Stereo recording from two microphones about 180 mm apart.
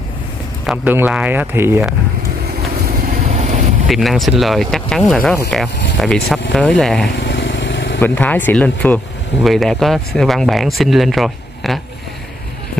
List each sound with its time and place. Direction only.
0.7 s speech: 10° right (ahead or behind)
3.0 s vehicle: 45° right (ahead or behind)
3.8 s speech: centre (ahead or behind)
7.2 s vehicle: 80° left
8.0 s speech: 10° left (ahead or behind)